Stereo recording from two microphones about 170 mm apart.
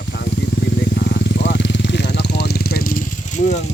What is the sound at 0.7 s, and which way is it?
Vehicle, 70° left (ahead or behind).